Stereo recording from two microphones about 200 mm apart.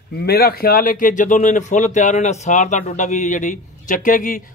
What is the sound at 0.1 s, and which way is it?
A man's voice, 50° left (ahead or behind).